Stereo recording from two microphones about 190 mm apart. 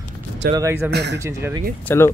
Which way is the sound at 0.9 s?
60° right (ahead or behind).